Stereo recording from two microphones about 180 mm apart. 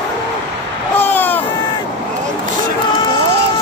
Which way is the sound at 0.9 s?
10° left (ahead or behind).